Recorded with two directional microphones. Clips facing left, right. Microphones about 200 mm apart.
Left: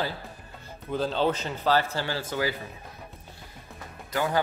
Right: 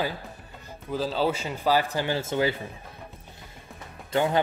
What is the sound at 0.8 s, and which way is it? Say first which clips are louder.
A man's voice: even; 5° right (ahead or behind).